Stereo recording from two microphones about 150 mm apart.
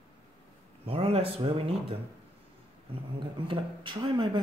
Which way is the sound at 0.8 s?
40° right (ahead or behind).